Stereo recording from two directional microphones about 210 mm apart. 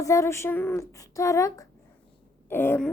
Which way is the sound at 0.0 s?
15° left (ahead or behind).